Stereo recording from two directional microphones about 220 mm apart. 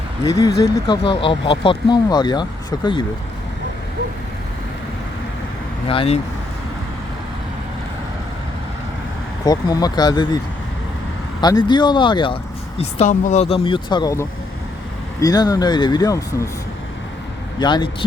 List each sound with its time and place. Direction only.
0.3 s speech: 15° left (ahead or behind)
5.9 s speech: 25° left (ahead or behind)
9.4 s speech: 15° left (ahead or behind)
11.3 s speech: 20° left (ahead or behind)
12.8 s speech: 35° left (ahead or behind); by 16.5 s 15° left (ahead or behind)
17.6 s speech: 20° left (ahead or behind)